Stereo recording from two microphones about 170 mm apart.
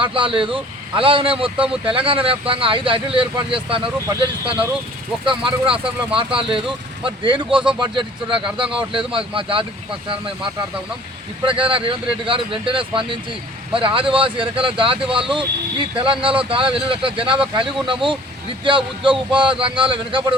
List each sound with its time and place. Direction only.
0.0 s speech: 30° right (ahead or behind)